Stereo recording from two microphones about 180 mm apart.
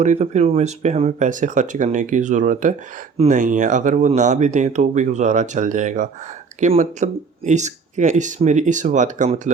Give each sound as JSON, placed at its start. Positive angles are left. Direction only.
{"t": 0.0, "sound": "speech", "side_deg": -40}